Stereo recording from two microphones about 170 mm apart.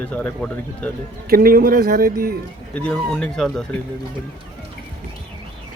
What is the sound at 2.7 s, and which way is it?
Speech, 5° left (ahead or behind).